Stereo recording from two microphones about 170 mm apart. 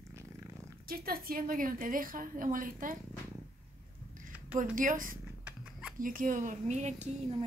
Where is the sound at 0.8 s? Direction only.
60° right (ahead or behind).